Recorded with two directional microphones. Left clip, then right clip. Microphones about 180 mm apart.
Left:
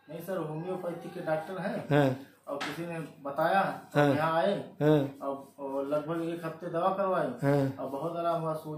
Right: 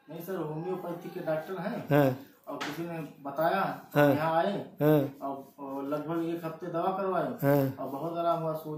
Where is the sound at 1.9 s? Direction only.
5° right (ahead or behind).